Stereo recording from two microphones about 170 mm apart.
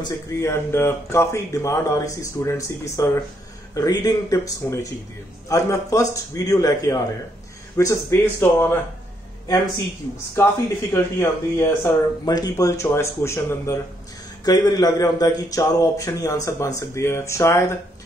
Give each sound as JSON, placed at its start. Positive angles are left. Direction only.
{"t": 0.0, "sound": "a man's voice", "side_deg": 15}
{"t": 10.3, "sound": "a man's voice", "side_deg": 15}